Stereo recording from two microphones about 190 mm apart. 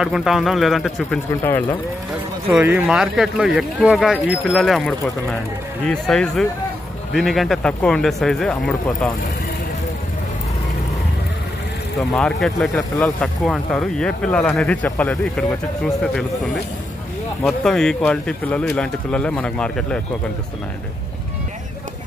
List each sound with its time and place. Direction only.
0.0 s speech: centre (ahead or behind)
1.4 s speech: 10° left (ahead or behind)
2.4 s speech: 10° right (ahead or behind)
12.1 s speech: centre (ahead or behind)
17.4 s speech: centre (ahead or behind)